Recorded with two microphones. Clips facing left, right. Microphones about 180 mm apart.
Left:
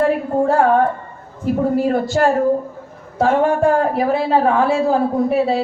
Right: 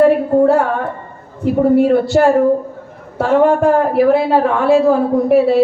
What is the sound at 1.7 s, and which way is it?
Speech, 65° right (ahead or behind).